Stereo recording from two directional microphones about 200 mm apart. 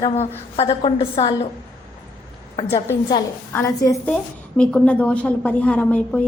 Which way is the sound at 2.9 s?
20° left (ahead or behind).